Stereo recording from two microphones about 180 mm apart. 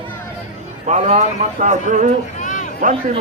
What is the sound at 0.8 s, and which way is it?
A man's voice, 40° right (ahead or behind).